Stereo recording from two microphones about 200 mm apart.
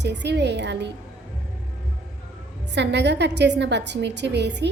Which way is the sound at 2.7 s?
60° right (ahead or behind).